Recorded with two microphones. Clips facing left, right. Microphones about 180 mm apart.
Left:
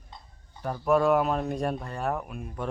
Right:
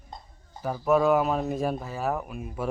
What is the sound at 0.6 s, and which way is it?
A man's voice, 5° right (ahead or behind).